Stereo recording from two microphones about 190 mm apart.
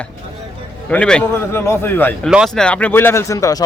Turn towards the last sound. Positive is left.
turn(degrees=15)  # may be behind; listen again after turning